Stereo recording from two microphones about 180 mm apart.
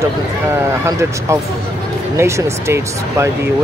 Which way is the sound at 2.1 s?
15° right (ahead or behind).